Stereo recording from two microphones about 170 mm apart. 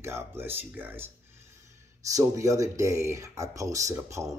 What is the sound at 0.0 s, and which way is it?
Speech, 15° right (ahead or behind).